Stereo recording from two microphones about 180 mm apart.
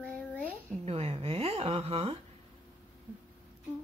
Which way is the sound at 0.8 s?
35° right (ahead or behind).